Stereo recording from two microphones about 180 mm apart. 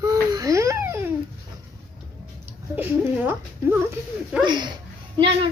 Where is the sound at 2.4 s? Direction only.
10° right (ahead or behind).